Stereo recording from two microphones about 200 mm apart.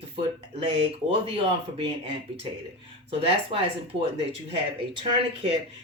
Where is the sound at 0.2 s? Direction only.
30° right (ahead or behind).